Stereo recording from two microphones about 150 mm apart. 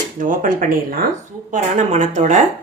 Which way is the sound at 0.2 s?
65° right (ahead or behind).